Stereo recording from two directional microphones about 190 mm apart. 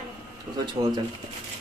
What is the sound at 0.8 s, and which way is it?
Speech, 25° right (ahead or behind).